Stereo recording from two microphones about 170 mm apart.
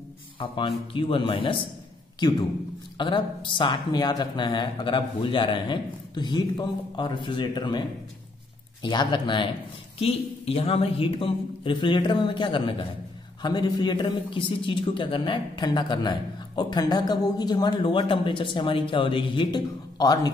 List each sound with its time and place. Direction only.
0.4 s a man's voice: 30° left (ahead or behind)
3.0 s a man's voice: 30° left (ahead or behind)
8.8 s a man's voice: 25° left (ahead or behind)